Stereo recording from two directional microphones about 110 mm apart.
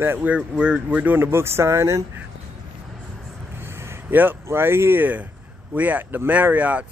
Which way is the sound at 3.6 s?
20° right (ahead or behind).